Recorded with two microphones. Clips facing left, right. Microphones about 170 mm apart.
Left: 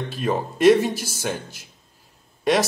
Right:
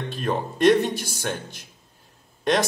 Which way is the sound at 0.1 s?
5° left (ahead or behind).